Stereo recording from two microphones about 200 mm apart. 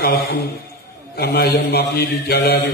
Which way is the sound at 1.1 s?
55° left (ahead or behind).